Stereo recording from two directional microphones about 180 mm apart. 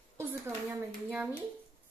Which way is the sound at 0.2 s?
15° right (ahead or behind).